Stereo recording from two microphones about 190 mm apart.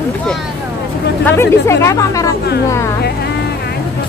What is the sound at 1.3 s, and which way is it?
Speech, 15° left (ahead or behind).